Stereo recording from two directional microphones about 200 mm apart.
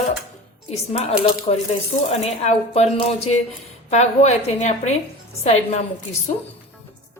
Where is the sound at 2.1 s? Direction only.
30° left (ahead or behind).